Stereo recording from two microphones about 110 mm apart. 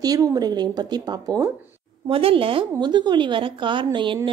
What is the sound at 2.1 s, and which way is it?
Speech, 60° right (ahead or behind).